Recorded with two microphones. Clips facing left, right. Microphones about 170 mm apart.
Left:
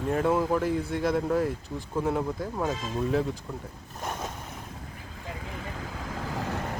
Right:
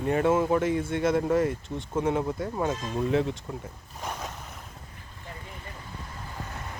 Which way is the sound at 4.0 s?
Centre (ahead or behind).